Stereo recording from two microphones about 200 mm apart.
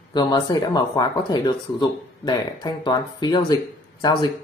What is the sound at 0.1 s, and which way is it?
Speech, 20° left (ahead or behind).